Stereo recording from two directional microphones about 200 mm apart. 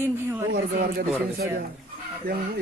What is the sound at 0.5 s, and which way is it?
Speech, 50° right (ahead or behind).